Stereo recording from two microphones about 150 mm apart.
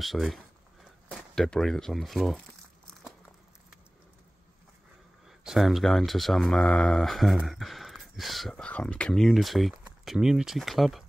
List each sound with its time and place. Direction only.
0.0 s speech: centre (ahead or behind)
5.4 s speech: centre (ahead or behind)